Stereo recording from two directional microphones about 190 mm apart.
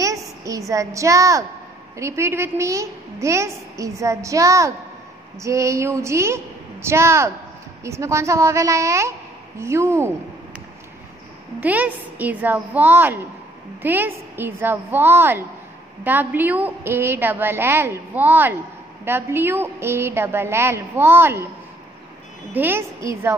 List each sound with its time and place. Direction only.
0.0 s a woman's voice: 15° right (ahead or behind)
11.6 s a woman's voice: 10° right (ahead or behind)
22.5 s a woman's voice: 10° right (ahead or behind)